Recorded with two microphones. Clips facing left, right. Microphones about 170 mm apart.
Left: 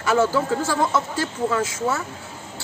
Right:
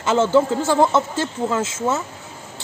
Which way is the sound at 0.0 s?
25° right (ahead or behind).